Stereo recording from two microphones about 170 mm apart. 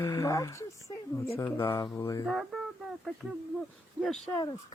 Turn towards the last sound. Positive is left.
turn(degrees=0)  # may be behind; listen again after turning